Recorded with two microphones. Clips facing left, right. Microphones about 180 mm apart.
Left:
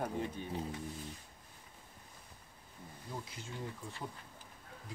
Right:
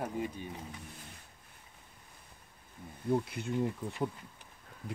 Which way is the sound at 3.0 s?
60° right (ahead or behind).